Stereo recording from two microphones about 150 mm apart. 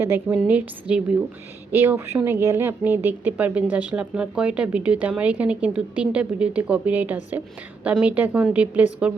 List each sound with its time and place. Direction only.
0.0 s speech: 10° right (ahead or behind)